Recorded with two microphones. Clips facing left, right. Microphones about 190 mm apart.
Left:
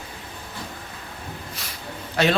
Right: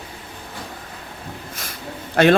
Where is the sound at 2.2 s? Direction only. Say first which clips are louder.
Right 6 dB; 55° right (ahead or behind).